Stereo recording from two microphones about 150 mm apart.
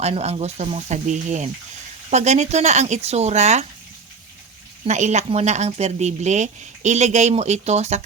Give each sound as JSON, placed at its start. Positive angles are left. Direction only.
{"t": 0.0, "sound": "speech", "side_deg": -45}
{"t": 4.9, "sound": "speech", "side_deg": -50}